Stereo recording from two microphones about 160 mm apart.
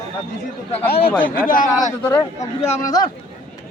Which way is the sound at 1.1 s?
10° left (ahead or behind).